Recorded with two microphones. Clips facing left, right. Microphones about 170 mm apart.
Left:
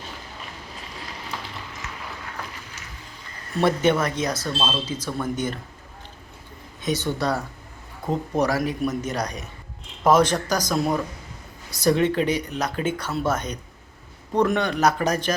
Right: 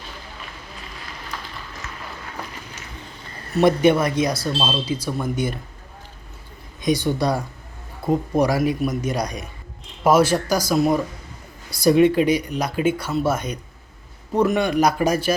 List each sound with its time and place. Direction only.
1.8 s run: 15° left (ahead or behind)
3.6 s speech: 15° right (ahead or behind)
6.8 s speech: 10° right (ahead or behind)